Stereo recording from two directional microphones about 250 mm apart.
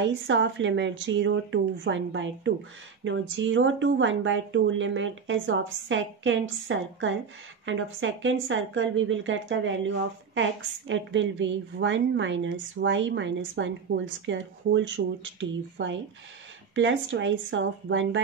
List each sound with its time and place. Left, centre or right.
0.0 s speech: right